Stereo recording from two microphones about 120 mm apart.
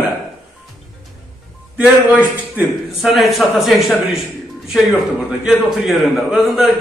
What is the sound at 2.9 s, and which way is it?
A man's voice, centre (ahead or behind).